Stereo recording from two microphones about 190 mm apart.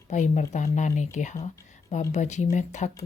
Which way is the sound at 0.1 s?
40° left (ahead or behind).